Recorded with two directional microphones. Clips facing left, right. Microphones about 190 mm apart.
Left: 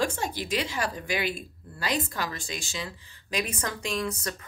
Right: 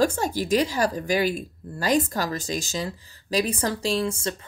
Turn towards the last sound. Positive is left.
turn(degrees=-25)  # may be behind; listen again after turning